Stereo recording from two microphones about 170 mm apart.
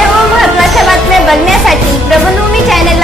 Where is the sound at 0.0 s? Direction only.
Centre (ahead or behind).